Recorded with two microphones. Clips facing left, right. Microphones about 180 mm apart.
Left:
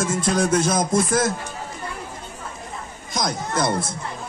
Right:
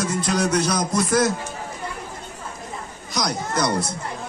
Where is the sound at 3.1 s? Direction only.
50° left (ahead or behind).